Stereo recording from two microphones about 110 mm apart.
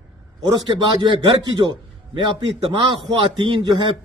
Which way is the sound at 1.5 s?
45° right (ahead or behind).